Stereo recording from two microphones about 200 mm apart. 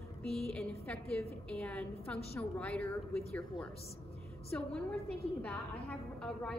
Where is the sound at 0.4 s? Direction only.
5° left (ahead or behind).